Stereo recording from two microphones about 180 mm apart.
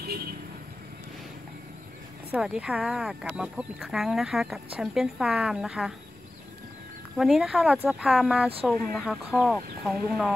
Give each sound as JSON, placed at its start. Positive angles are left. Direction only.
{"t": 0.0, "sound": "vehicle", "side_deg": -60}
{"t": 2.3, "sound": "speech", "side_deg": -5}
{"t": 7.2, "sound": "speech", "side_deg": 0}